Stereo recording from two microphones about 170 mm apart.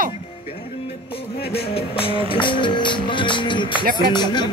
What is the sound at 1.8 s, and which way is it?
Music, 35° left (ahead or behind).